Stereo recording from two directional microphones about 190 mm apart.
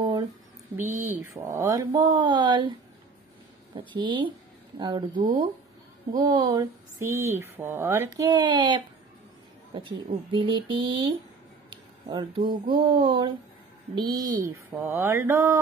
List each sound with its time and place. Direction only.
0.0 s a sound: 20° right (ahead or behind)
0.7 s speech: 10° right (ahead or behind)
3.7 s mantra: 25° right (ahead or behind)
6.1 s speech: 25° right (ahead or behind)
8.2 s mantra: 25° right (ahead or behind)
10.3 s mantra: 25° right (ahead or behind)
11.7 s speech: 25° right (ahead or behind)